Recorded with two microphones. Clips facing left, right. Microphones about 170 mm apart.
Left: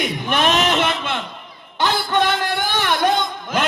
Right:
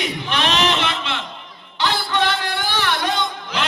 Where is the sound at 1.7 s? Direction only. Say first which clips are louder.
Left 2 dB; 50° left (ahead or behind).